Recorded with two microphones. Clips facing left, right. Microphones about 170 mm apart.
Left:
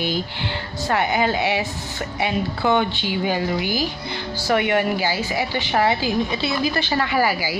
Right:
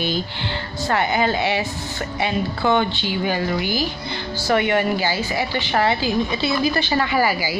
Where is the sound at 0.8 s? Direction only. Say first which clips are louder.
Even; 10° left (ahead or behind).